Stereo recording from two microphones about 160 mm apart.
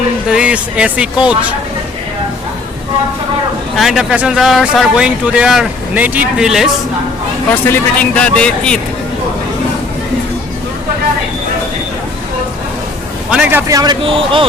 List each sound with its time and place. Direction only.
0.3 s speech: 5° right (ahead or behind)
3.8 s speech: centre (ahead or behind)
7.5 s speech: 10° left (ahead or behind)
13.3 s a man's voice: 10° right (ahead or behind); by 14.4 s 35° right (ahead or behind)